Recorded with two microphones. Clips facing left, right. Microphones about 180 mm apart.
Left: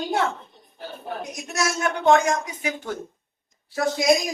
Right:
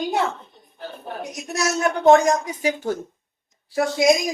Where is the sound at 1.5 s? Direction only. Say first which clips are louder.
Right 3 dB; 35° right (ahead or behind).